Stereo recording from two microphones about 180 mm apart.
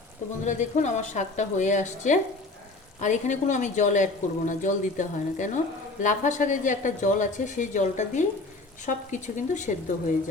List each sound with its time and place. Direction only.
0.4 s speech: 40° left (ahead or behind)